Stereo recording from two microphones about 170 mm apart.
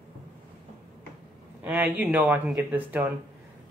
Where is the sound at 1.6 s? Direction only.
10° right (ahead or behind).